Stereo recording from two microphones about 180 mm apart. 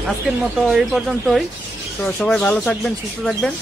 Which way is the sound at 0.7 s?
Centre (ahead or behind).